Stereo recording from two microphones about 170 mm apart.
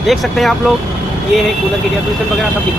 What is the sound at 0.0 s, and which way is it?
Speech, centre (ahead or behind).